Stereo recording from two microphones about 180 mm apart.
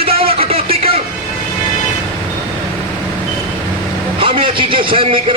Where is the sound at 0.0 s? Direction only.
30° right (ahead or behind).